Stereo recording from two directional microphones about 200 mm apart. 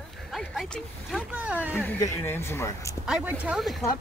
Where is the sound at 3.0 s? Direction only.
5° right (ahead or behind).